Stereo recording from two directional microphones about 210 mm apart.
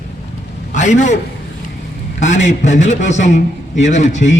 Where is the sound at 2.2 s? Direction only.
35° left (ahead or behind).